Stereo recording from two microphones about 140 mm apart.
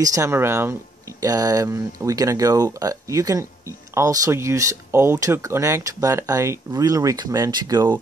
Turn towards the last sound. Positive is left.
turn(degrees=-30)  # may be behind; listen again after turning